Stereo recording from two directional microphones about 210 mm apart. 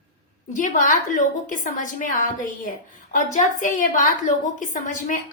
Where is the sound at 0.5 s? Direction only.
40° left (ahead or behind).